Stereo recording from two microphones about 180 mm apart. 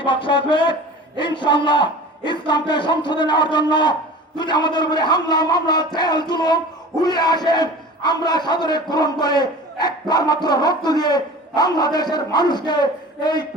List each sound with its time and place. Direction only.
0.0 s a man's voice: 25° left (ahead or behind)